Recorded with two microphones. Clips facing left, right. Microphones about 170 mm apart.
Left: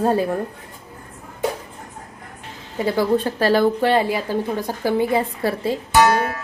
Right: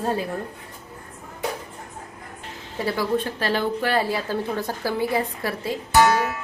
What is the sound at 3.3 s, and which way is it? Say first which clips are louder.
Speech: left 7 dB; 40° left (ahead or behind).